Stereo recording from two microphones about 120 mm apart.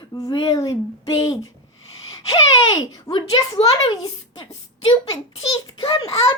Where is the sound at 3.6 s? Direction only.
50° left (ahead or behind).